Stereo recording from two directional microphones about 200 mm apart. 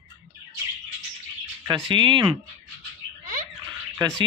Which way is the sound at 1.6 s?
25° right (ahead or behind).